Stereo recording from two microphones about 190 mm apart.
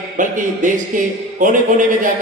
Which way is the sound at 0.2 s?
45° right (ahead or behind).